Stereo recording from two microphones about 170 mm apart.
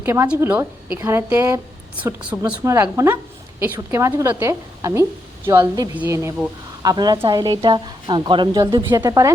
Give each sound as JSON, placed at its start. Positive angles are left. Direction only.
{"t": 0.0, "sound": "a woman's voice", "side_deg": -15}